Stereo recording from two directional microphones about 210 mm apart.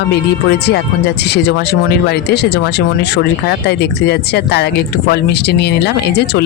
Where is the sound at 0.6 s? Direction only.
50° left (ahead or behind).